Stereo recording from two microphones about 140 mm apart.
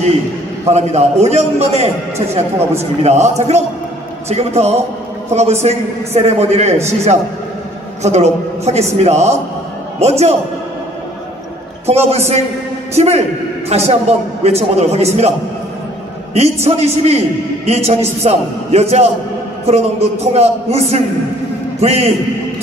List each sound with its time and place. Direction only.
0.7 s a man's voice: 50° right (ahead or behind)
11.8 s a man's voice: 50° right (ahead or behind)
16.6 s a man's voice: 50° right (ahead or behind)
21.8 s a man's voice: 50° right (ahead or behind)